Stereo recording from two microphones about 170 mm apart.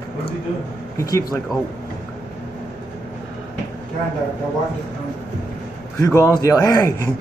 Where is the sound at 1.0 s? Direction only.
20° left (ahead or behind).